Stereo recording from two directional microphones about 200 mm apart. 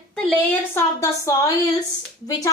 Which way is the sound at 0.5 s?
15° left (ahead or behind).